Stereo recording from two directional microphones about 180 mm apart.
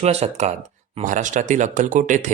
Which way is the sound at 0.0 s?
35° right (ahead or behind).